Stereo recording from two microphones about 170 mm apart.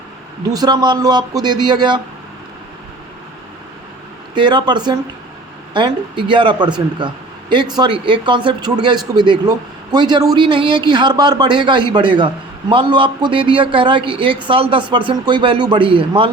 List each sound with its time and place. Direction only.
0.5 s speech: 25° right (ahead or behind)
4.4 s speech: 30° right (ahead or behind)